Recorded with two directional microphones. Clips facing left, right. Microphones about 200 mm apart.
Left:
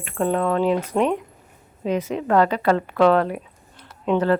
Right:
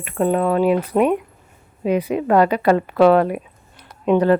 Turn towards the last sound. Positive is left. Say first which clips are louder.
# right 4 dB
turn(degrees=-15)  # may be behind; listen again after turning